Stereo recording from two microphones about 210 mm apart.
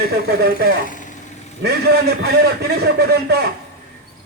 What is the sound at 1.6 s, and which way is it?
Speech, 50° right (ahead or behind).